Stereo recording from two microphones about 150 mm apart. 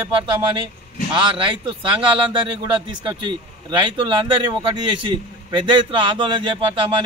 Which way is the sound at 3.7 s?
30° right (ahead or behind).